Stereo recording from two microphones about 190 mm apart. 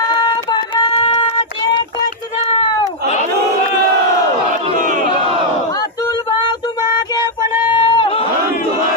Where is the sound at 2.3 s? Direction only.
25° left (ahead or behind).